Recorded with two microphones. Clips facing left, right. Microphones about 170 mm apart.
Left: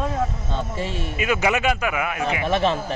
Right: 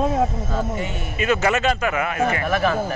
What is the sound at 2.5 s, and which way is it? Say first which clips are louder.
Speech: right 1 dB; 25° left (ahead or behind).